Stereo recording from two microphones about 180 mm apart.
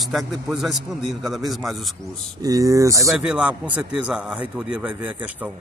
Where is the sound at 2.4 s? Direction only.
20° right (ahead or behind).